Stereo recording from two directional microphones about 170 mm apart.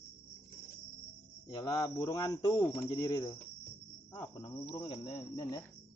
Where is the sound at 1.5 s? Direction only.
20° left (ahead or behind).